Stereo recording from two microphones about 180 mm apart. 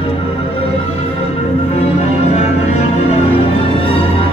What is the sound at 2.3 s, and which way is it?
Music, 35° left (ahead or behind).